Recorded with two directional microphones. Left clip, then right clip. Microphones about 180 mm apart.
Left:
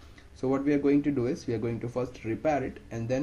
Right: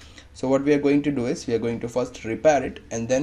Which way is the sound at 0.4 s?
25° right (ahead or behind).